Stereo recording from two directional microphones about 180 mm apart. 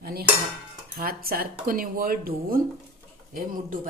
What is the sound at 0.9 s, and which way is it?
Speech, 55° right (ahead or behind).